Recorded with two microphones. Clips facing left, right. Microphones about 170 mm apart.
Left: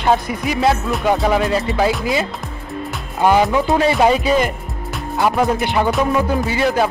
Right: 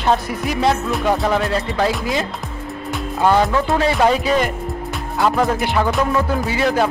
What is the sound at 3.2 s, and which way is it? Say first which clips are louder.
Speech: left 2 dB; 15° left (ahead or behind).